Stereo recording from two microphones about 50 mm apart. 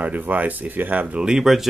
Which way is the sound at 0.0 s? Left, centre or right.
Right.